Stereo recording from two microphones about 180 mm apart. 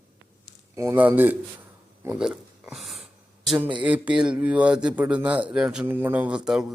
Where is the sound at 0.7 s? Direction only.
15° right (ahead or behind).